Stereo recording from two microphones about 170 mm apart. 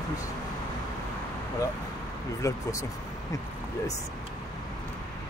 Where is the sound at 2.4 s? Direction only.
20° left (ahead or behind).